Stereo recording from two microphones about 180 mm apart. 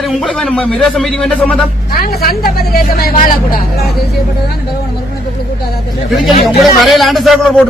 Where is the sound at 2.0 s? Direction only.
55° left (ahead or behind).